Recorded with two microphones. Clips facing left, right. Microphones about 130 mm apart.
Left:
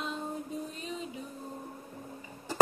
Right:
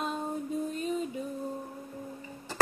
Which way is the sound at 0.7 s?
45° right (ahead or behind).